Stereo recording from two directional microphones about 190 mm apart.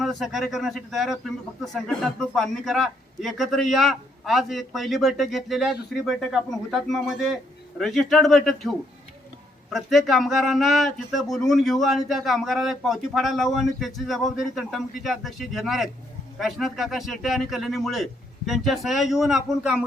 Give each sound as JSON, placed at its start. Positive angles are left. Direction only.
{"t": 0.0, "sound": "a man's voice", "side_deg": 0}